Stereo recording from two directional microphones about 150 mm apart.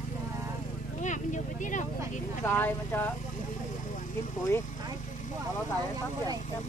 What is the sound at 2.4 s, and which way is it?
Speech, 15° left (ahead or behind).